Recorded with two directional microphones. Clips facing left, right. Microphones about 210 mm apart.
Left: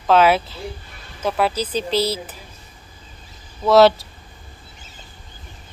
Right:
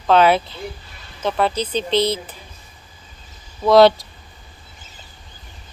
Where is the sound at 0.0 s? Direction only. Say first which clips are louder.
Right 1 dB; 5° left (ahead or behind).